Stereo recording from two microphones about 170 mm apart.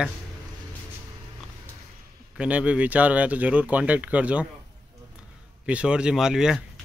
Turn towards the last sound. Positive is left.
turn(degrees=-5)  # may be behind; listen again after turning